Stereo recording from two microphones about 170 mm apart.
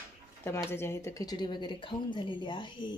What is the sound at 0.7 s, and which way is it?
Speech, 15° left (ahead or behind).